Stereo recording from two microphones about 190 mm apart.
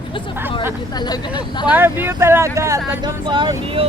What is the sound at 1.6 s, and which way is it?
Speech, 10° right (ahead or behind).